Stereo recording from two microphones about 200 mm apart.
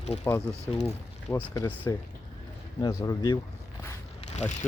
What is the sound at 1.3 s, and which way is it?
Speech, 10° left (ahead or behind).